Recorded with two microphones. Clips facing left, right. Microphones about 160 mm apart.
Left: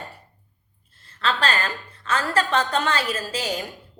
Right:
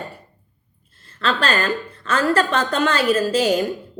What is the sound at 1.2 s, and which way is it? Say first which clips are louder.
A woman's voice: right 3 dB; 50° right (ahead or behind).